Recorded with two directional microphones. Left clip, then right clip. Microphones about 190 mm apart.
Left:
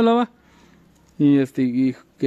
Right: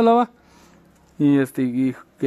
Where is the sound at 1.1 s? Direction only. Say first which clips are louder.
Left 1 dB; 30° left (ahead or behind).